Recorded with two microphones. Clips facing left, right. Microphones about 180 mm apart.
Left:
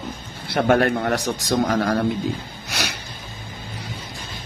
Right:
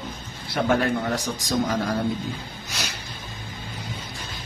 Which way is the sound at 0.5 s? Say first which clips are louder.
Left 4 dB; 65° left (ahead or behind).